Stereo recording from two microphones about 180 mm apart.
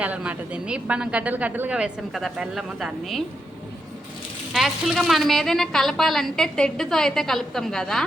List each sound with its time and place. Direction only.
0.0 s a woman's voice: 5° right (ahead or behind)
4.5 s a woman's voice: centre (ahead or behind)